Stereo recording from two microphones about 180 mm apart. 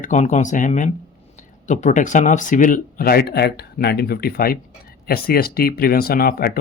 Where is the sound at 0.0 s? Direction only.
45° left (ahead or behind).